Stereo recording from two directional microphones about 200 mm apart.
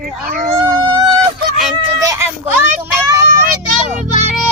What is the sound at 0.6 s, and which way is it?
A child's voice, 20° right (ahead or behind).